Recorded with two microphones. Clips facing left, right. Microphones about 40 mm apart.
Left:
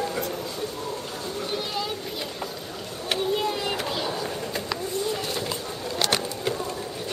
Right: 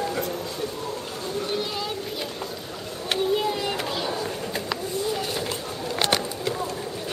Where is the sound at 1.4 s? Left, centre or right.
Centre.